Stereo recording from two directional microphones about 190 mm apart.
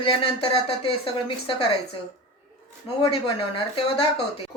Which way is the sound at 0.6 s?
30° left (ahead or behind).